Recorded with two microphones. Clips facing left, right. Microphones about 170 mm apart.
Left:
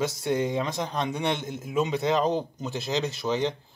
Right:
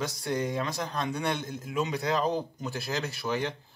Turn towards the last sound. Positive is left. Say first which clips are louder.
# left 4 dB
turn(degrees=20)  # may be behind; listen again after turning